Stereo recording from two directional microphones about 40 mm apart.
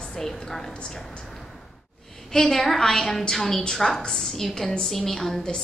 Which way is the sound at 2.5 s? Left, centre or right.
Centre.